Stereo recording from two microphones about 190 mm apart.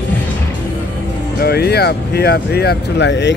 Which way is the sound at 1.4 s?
55° left (ahead or behind).